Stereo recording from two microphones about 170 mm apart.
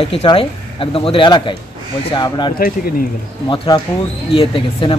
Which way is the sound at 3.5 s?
25° left (ahead or behind).